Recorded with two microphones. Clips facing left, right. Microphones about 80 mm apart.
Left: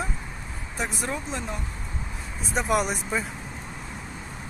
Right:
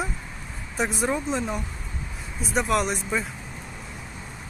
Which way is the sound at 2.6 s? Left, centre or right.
Centre.